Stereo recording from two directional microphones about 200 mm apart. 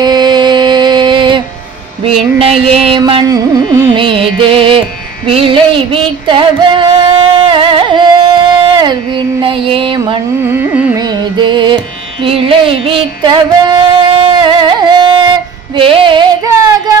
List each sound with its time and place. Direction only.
0.0 s music: 20° right (ahead or behind)
10.4 s carnatic music: 10° right (ahead or behind)
11.0 s music: 20° right (ahead or behind)